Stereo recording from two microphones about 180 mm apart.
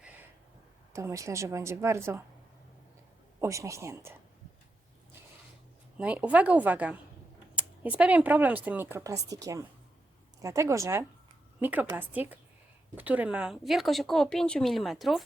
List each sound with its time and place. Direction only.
0.9 s speech: 15° right (ahead or behind)
3.4 s speech: 15° right (ahead or behind)
6.0 s speech: 10° right (ahead or behind)